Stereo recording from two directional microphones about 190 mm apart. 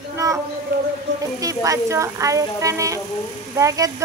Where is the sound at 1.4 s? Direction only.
15° right (ahead or behind).